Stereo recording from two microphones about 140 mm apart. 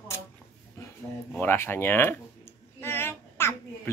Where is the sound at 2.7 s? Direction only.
15° left (ahead or behind).